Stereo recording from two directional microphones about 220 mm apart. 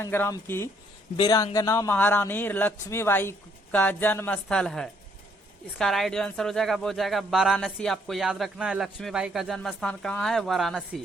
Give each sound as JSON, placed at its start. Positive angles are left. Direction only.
{"t": 0.0, "sound": "a woman's voice", "side_deg": 10}